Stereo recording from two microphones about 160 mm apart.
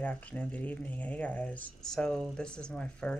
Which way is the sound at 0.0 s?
10° left (ahead or behind).